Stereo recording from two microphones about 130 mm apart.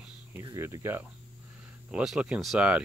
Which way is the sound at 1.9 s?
5° right (ahead or behind).